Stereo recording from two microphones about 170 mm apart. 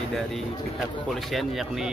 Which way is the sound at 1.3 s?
Centre (ahead or behind).